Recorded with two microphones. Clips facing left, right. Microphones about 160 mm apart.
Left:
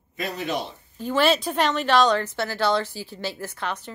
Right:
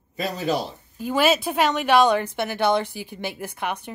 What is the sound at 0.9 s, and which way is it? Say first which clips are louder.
A woman's voice: right 1 dB; 10° right (ahead or behind).